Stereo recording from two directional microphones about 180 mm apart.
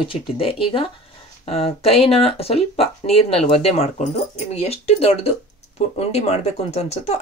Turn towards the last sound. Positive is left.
turn(degrees=35)  # may be behind; listen again after turning